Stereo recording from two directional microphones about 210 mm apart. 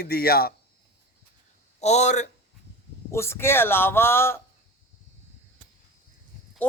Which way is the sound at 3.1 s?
10° left (ahead or behind).